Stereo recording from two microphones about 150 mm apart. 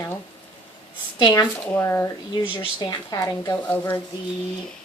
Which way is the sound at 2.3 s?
35° left (ahead or behind).